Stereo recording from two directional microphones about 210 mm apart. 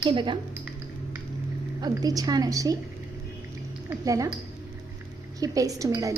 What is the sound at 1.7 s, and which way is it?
A woman's voice, 20° right (ahead or behind).